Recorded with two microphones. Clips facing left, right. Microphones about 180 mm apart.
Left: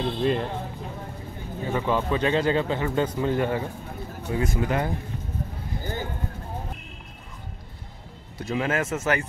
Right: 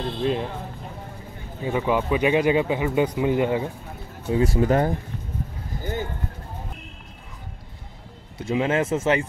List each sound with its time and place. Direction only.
0.0 s speech: centre (ahead or behind)
1.7 s speech: 15° right (ahead or behind)
4.3 s speech: 30° right (ahead or behind)
8.4 s speech: 25° right (ahead or behind)